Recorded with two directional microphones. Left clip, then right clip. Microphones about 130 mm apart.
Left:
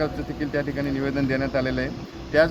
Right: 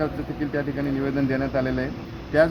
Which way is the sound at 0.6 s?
40° left (ahead or behind).